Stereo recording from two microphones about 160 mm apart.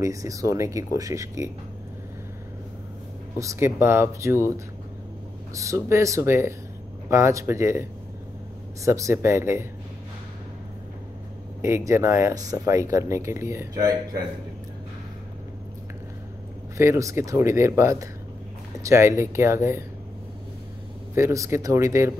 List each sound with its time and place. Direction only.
0.0 s speech: 20° right (ahead or behind)
3.3 s speech: 15° right (ahead or behind)
5.5 s speech: 20° right (ahead or behind)
11.6 s speech: 15° right (ahead or behind)
16.7 s speech: 15° right (ahead or behind)
21.1 s speech: 20° right (ahead or behind)